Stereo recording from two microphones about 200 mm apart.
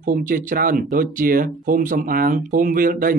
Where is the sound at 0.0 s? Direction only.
45° right (ahead or behind).